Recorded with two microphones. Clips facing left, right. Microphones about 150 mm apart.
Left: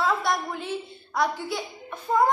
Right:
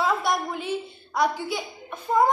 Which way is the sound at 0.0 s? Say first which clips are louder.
Right 1 dB; 5° right (ahead or behind).